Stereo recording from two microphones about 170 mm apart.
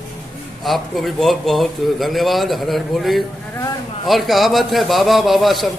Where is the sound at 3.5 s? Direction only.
20° left (ahead or behind).